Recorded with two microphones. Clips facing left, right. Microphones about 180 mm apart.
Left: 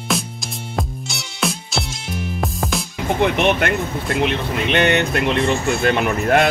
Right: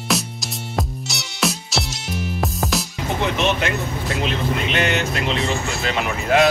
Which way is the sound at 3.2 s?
55° left (ahead or behind).